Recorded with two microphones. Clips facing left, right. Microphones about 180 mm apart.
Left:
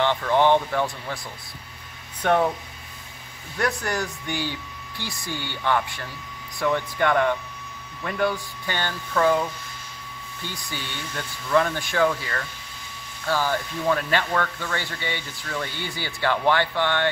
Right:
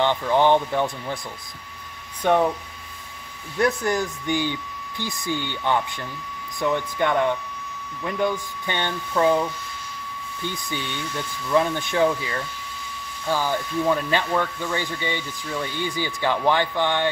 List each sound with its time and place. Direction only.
0.0 s speech: 15° right (ahead or behind)
2.2 s speech: 15° right (ahead or behind)
3.5 s speech: 20° right (ahead or behind)
10.5 s speech: 15° right (ahead or behind)